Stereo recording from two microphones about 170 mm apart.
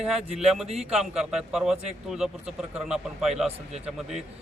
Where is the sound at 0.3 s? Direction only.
5° right (ahead or behind).